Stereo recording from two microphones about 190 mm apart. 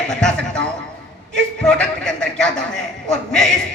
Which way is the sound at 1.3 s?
5° left (ahead or behind).